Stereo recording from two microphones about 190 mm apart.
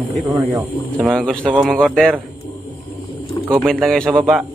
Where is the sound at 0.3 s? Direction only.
20° right (ahead or behind).